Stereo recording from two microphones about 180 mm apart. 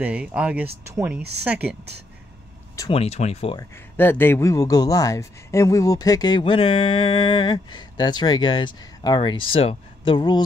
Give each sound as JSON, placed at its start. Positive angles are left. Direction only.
{"t": 0.0, "sound": "speech", "side_deg": -5}
{"t": 2.9, "sound": "speech", "side_deg": 35}
{"t": 3.5, "sound": "speech", "side_deg": 10}